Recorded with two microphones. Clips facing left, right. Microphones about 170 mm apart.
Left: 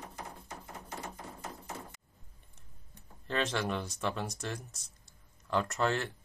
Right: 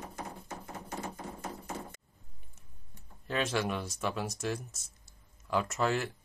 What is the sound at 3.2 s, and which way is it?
Speech, 5° right (ahead or behind).